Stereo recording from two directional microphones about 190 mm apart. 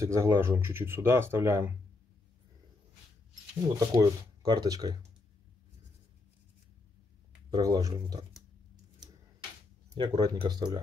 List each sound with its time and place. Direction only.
0.0 s speech: 15° right (ahead or behind)
3.8 s speech: 20° right (ahead or behind)
7.5 s speech: 20° right (ahead or behind)
9.9 s speech: 25° right (ahead or behind)